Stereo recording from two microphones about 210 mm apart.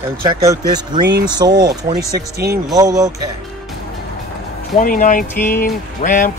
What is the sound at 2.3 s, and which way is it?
Speech, 50° right (ahead or behind).